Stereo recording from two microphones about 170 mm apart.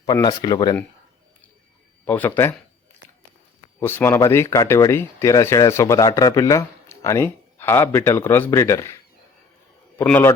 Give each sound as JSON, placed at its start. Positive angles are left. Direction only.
{"t": 0.0, "sound": "speech", "side_deg": 25}
{"t": 2.0, "sound": "speech", "side_deg": 10}
{"t": 3.8, "sound": "speech", "side_deg": 15}
{"t": 10.0, "sound": "speech", "side_deg": 10}